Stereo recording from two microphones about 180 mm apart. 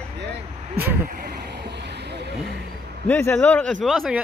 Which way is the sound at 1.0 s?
55° right (ahead or behind).